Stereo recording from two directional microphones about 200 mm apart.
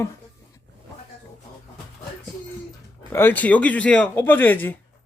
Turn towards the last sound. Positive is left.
turn(degrees=10)  # may be behind; listen again after turning